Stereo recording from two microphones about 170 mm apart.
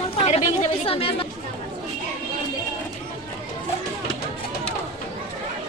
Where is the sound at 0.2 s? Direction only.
40° left (ahead or behind).